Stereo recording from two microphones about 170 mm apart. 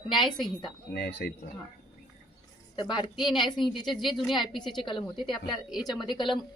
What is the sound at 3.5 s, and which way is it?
Speech, centre (ahead or behind).